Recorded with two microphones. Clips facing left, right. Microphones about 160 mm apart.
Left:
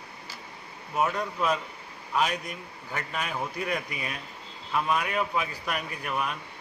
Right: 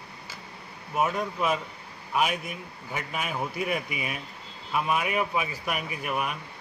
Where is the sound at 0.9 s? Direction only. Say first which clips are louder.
Right 1 dB; 5° right (ahead or behind).